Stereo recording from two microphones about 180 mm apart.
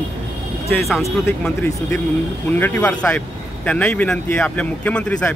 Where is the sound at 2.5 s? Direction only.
10° left (ahead or behind).